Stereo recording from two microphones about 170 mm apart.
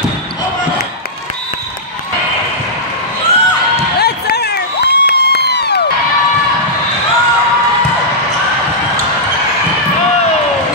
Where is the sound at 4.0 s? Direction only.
75° left (ahead or behind).